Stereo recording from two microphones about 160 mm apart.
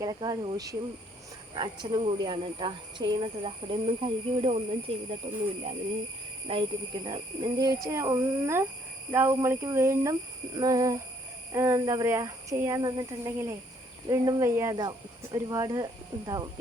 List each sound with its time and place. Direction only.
0.0 s speech: 25° right (ahead or behind)
6.5 s speech: 35° right (ahead or behind)
7.8 s a child's voice: 20° right (ahead or behind)